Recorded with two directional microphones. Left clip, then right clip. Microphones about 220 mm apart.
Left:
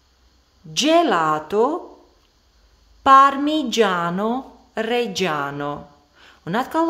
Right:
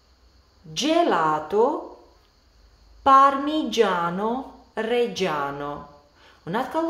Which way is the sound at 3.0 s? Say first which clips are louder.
Left 3 dB; 45° left (ahead or behind).